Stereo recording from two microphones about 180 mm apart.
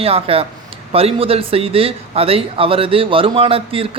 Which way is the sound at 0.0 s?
30° right (ahead or behind).